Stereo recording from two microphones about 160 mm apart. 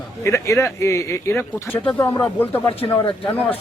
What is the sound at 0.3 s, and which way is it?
Speech, 20° left (ahead or behind).